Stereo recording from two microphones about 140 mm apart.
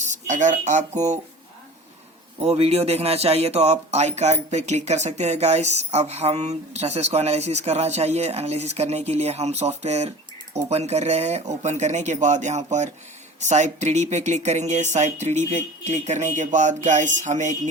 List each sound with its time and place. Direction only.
0.0 s speech: 60° right (ahead or behind)
2.4 s speech: 45° right (ahead or behind)